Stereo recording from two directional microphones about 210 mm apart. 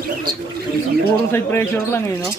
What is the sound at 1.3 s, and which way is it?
Speech, 10° left (ahead or behind).